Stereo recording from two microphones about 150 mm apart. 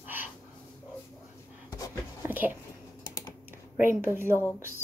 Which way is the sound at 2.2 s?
10° right (ahead or behind).